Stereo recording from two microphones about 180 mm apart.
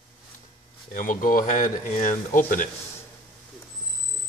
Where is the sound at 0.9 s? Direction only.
45° left (ahead or behind).